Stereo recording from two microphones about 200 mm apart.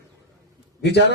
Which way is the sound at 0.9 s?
60° left (ahead or behind).